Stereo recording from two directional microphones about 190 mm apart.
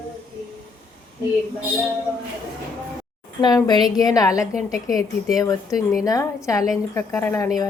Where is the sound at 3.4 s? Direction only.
20° left (ahead or behind).